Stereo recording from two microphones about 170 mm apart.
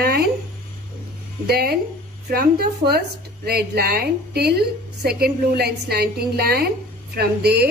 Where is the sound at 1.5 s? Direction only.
65° right (ahead or behind).